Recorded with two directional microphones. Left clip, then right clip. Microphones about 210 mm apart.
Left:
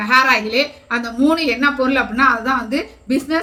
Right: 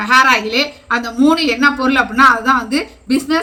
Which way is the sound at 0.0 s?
15° right (ahead or behind).